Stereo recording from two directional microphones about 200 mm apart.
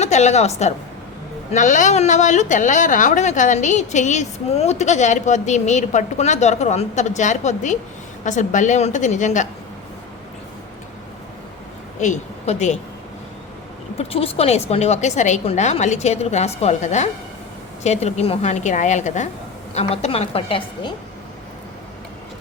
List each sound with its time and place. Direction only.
0.0 s a woman's voice: 35° left (ahead or behind)
11.9 s a woman's voice: 35° left (ahead or behind)
14.0 s a woman's voice: 30° left (ahead or behind)